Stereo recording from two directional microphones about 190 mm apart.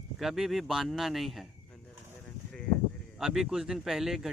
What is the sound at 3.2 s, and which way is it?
Speech, centre (ahead or behind).